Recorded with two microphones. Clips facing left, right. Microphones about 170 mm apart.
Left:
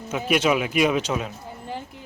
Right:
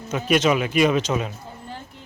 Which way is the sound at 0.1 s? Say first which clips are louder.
Right 2 dB; 10° left (ahead or behind).